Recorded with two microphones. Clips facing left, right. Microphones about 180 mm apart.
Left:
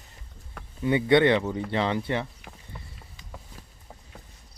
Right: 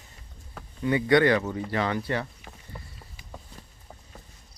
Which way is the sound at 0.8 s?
25° left (ahead or behind).